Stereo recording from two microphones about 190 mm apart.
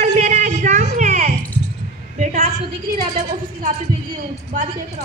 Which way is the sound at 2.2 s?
50° right (ahead or behind).